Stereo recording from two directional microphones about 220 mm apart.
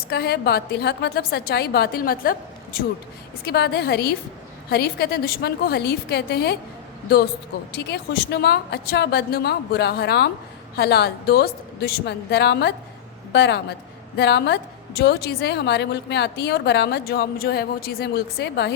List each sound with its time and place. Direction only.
0.1 s a woman's voice: 45° left (ahead or behind)
3.4 s a woman's voice: 45° left (ahead or behind)
7.7 s a woman's voice: 50° left (ahead or behind)